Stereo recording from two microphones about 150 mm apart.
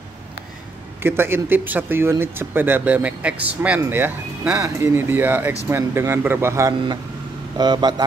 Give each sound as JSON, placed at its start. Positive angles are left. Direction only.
{"t": 1.0, "sound": "speech", "side_deg": -15}